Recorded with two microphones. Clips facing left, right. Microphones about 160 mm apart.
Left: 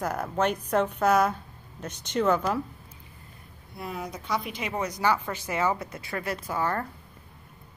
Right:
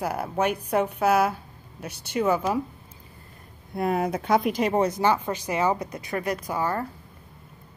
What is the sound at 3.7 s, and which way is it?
Speech, 60° right (ahead or behind).